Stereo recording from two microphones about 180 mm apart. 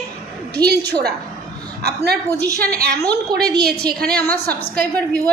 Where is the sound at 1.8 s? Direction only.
65° right (ahead or behind).